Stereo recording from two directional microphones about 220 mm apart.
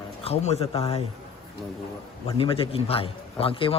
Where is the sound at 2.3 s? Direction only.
25° left (ahead or behind).